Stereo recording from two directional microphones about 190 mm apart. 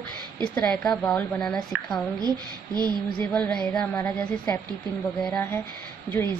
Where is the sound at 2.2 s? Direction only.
20° right (ahead or behind).